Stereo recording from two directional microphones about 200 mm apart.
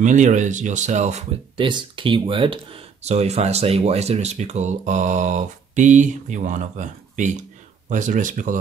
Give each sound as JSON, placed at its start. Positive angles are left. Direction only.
{"t": 0.0, "sound": "speech", "side_deg": -40}
{"t": 1.7, "sound": "speech", "side_deg": -25}